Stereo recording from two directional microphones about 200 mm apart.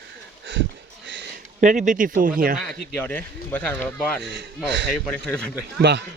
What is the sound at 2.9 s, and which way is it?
Speech, 10° left (ahead or behind).